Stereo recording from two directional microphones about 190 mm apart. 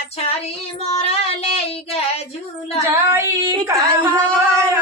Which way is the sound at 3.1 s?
15° right (ahead or behind).